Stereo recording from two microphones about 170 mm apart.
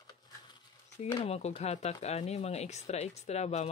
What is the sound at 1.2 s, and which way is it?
Speech, 35° left (ahead or behind).